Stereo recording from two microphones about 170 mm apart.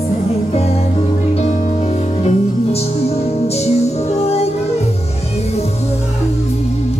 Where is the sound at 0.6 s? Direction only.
35° left (ahead or behind).